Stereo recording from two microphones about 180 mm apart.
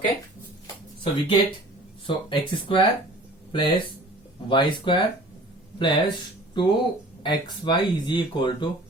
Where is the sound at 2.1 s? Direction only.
30° left (ahead or behind).